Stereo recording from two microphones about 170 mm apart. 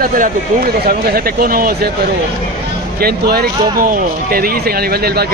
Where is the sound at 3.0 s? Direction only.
65° right (ahead or behind).